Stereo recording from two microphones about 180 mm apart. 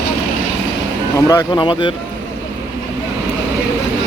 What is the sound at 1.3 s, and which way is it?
Speech, 20° left (ahead or behind).